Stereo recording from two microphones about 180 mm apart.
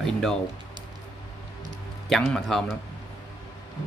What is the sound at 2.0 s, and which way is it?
Speech, centre (ahead or behind).